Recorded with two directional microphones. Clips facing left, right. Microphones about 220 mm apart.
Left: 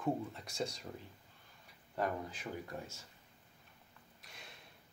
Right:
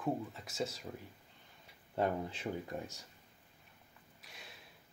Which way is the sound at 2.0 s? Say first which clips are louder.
Right 3 dB; 25° right (ahead or behind).